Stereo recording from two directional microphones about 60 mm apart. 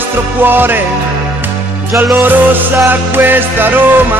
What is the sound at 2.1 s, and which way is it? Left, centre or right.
Music, right.